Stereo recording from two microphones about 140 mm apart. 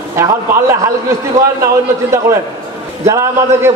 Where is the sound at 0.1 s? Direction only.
20° right (ahead or behind).